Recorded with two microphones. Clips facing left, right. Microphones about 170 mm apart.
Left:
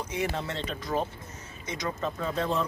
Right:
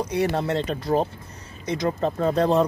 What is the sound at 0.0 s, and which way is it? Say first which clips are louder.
Speech: right 8 dB; 35° right (ahead or behind).